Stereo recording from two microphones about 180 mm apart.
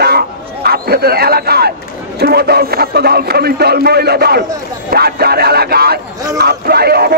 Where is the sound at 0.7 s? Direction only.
60° right (ahead or behind).